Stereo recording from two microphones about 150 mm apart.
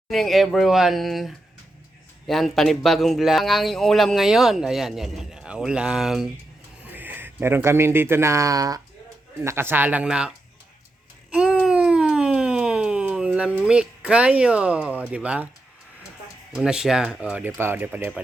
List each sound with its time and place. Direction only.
0.1 s speech: centre (ahead or behind)
11.3 s a sound: 5° right (ahead or behind)
13.7 s speech: 5° right (ahead or behind)
16.6 s speech: 5° right (ahead or behind)